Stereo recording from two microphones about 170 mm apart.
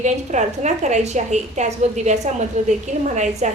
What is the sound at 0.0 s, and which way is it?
A woman's voice, 45° right (ahead or behind).